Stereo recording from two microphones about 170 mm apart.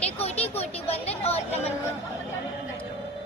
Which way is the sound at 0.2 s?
35° left (ahead or behind).